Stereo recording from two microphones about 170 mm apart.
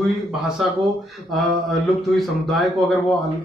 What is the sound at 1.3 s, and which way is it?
Speech, centre (ahead or behind).